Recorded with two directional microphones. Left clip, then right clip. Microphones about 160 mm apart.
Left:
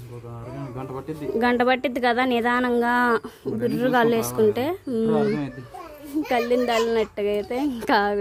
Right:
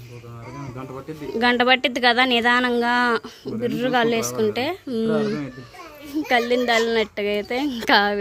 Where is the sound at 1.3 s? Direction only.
10° left (ahead or behind).